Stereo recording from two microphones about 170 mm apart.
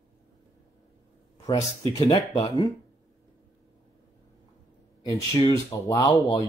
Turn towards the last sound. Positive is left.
turn(degrees=20)  # may be behind; listen again after turning